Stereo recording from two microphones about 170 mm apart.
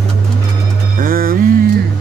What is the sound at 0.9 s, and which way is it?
Music, 60° right (ahead or behind).